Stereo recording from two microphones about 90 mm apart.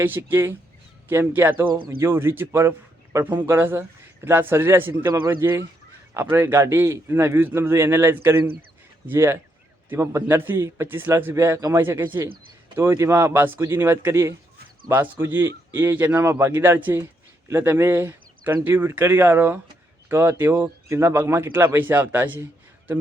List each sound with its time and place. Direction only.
0.2 s speech: 30° right (ahead or behind)